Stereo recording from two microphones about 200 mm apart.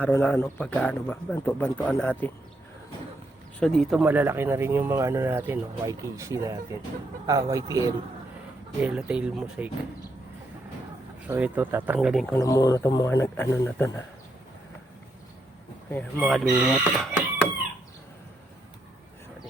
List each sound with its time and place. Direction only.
0.0 s speech: 10° left (ahead or behind)
3.6 s speech: centre (ahead or behind); by 7.9 s 15° right (ahead or behind)
8.8 s speech: 5° right (ahead or behind)
11.3 s speech: 10° right (ahead or behind)
12.3 s speech: 15° left (ahead or behind)
15.9 s speech: 10° left (ahead or behind)
16.2 s speech: 5° right (ahead or behind)